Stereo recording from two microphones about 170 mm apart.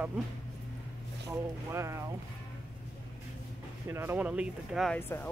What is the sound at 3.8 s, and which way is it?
Speech, 15° right (ahead or behind).